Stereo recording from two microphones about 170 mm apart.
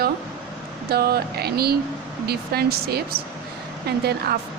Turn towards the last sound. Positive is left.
turn(degrees=-65)  # may be behind; listen again after turning